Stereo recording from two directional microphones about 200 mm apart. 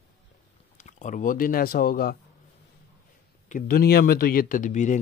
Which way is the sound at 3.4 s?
45° left (ahead or behind).